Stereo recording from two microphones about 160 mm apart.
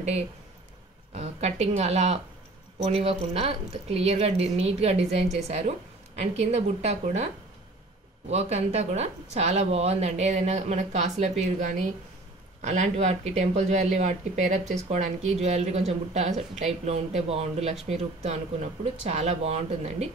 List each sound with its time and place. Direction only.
1.1 s a woman's voice: 45° right (ahead or behind)
8.3 s speech: 45° right (ahead or behind)